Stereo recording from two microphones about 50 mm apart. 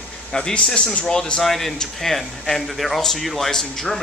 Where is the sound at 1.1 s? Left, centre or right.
Centre.